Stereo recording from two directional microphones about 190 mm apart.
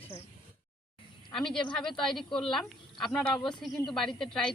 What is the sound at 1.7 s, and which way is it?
Speech, 5° left (ahead or behind).